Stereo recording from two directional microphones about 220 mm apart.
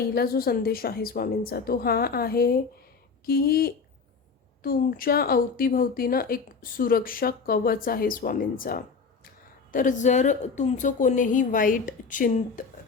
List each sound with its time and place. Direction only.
0.1 s a woman's voice: 45° left (ahead or behind)